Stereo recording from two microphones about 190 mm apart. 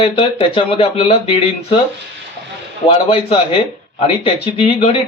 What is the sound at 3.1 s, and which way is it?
Speech, 30° left (ahead or behind).